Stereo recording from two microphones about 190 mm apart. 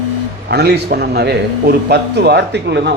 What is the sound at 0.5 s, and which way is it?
A man's voice, 60° right (ahead or behind).